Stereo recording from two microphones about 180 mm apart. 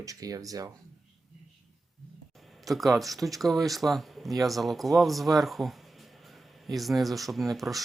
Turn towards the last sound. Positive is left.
turn(degrees=0)  # may be behind; listen again after turning